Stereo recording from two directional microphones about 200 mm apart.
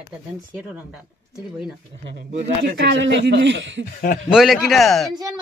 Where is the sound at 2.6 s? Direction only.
60° right (ahead or behind).